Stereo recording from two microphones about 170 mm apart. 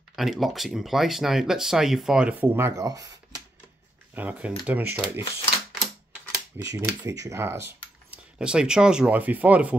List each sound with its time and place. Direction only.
0.1 s speech: centre (ahead or behind); by 3.1 s 20° right (ahead or behind)
4.1 s speech: 10° right (ahead or behind)
6.6 s speech: 20° right (ahead or behind)